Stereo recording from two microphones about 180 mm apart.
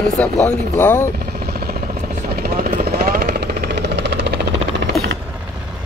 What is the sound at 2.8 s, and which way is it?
Vehicle, 55° right (ahead or behind).